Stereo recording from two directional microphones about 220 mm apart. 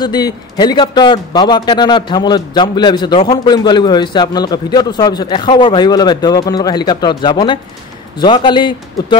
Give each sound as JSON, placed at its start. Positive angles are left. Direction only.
{"t": 0.0, "sound": "a man's voice", "side_deg": 20}